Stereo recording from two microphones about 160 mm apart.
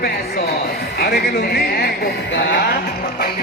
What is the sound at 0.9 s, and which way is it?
Speech, 75° left (ahead or behind).